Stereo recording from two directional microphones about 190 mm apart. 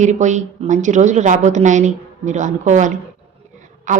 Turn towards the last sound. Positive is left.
turn(degrees=-40)  # may be behind; listen again after turning